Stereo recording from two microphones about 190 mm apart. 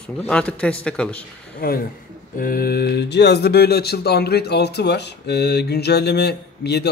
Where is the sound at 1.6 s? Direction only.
50° left (ahead or behind).